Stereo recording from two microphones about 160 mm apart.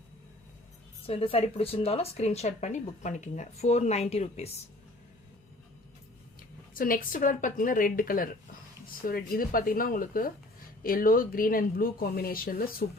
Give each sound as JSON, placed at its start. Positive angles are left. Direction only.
{"t": 1.0, "sound": "speech", "side_deg": 35}
{"t": 6.7, "sound": "speech", "side_deg": 65}